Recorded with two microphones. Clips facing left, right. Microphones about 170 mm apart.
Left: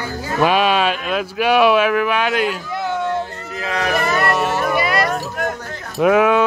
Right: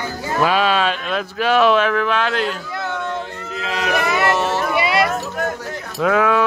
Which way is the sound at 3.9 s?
Centre (ahead or behind).